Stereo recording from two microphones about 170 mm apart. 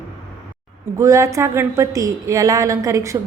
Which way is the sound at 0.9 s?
15° right (ahead or behind).